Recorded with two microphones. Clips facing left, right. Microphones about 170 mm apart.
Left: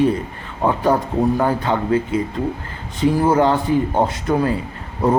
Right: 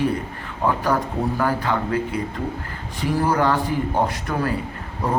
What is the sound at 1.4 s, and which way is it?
Speech, 25° left (ahead or behind).